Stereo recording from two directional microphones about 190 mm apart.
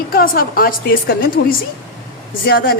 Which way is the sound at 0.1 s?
50° left (ahead or behind).